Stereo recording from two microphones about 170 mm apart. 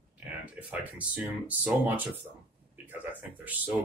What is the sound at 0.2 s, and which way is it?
Speech, 10° right (ahead or behind).